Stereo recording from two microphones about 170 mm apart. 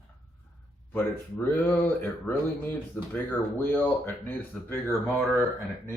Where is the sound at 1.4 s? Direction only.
10° left (ahead or behind).